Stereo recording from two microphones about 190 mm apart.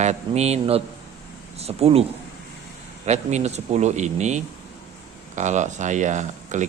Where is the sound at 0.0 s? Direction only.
35° right (ahead or behind).